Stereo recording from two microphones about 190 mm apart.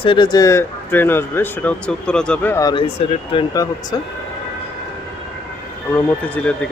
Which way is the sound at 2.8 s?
30° left (ahead or behind).